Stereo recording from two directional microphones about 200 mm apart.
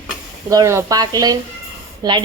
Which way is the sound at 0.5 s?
15° right (ahead or behind).